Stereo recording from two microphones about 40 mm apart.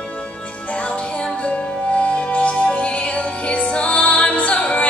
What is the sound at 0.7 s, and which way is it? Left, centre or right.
Music, left.